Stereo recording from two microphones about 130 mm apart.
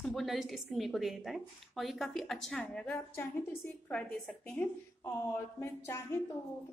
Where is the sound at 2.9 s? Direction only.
20° left (ahead or behind).